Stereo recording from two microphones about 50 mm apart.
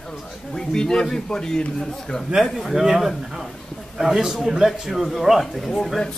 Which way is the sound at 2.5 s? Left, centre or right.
Centre.